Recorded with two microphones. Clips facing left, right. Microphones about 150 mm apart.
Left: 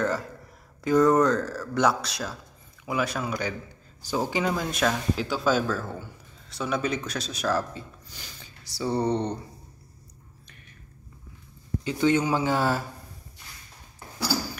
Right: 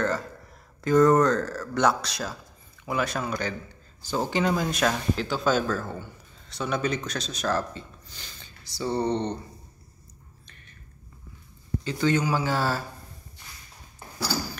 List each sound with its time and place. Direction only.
0.8 s speech: 5° left (ahead or behind)
11.8 s speech: 15° left (ahead or behind)